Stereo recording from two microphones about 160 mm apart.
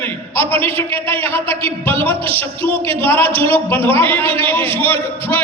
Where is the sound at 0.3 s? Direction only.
15° left (ahead or behind).